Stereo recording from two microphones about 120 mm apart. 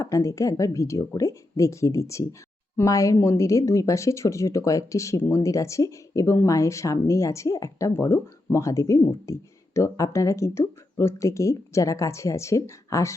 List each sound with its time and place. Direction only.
0.0 s speech: 25° left (ahead or behind)